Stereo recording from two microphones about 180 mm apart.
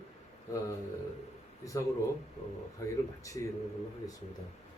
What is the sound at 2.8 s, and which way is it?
Speech, 15° left (ahead or behind).